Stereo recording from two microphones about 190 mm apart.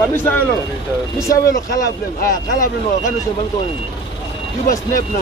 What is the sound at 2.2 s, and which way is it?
Speech, 45° left (ahead or behind).